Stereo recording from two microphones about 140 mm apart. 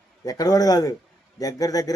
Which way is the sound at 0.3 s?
25° left (ahead or behind).